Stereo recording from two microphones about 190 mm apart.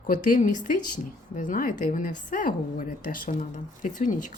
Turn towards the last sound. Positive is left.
turn(degrees=40)  # may be behind; listen again after turning